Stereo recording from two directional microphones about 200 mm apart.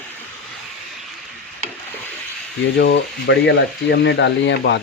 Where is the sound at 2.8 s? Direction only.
65° left (ahead or behind).